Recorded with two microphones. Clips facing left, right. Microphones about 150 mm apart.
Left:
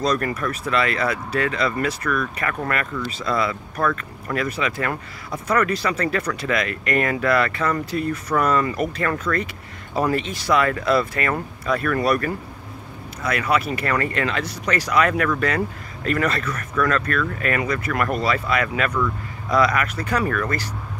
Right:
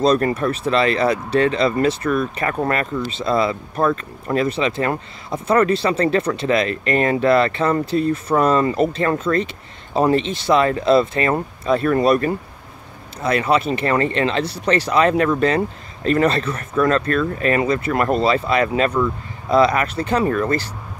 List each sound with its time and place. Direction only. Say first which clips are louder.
0.0 s speech: right 6 dB; 25° right (ahead or behind)